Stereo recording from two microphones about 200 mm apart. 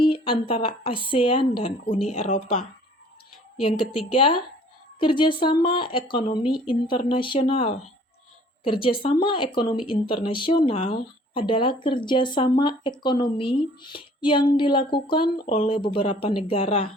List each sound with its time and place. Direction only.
0.0 s speech: 25° left (ahead or behind)